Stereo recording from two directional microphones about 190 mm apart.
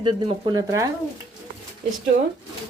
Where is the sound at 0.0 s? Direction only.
25° right (ahead or behind).